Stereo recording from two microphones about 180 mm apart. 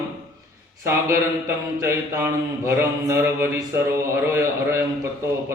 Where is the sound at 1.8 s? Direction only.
15° right (ahead or behind).